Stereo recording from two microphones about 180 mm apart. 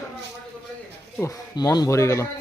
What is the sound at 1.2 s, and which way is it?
Speech, 20° left (ahead or behind).